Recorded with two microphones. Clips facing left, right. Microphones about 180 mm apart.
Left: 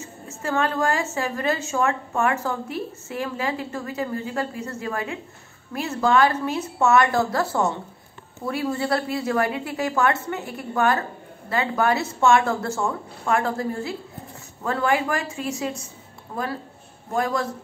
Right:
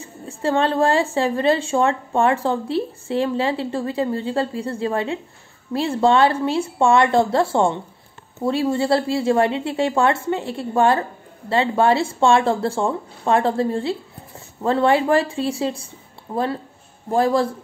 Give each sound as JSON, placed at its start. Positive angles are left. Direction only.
{"t": 0.0, "sound": "a woman's voice", "side_deg": -30}